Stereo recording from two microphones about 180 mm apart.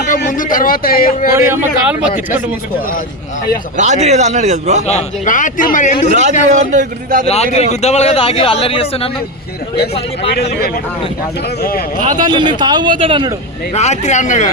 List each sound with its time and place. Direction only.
0.3 s a man's voice: 50° left (ahead or behind)
1.3 s a man's voice: 15° right (ahead or behind)
3.8 s a man's voice: 40° right (ahead or behind)
4.9 s a man's voice: 40° left (ahead or behind)
6.1 s a man's voice: 40° right (ahead or behind)
7.3 s speech: 35° left (ahead or behind)
12.2 s speech: 25° right (ahead or behind)
13.7 s speech: 40° left (ahead or behind)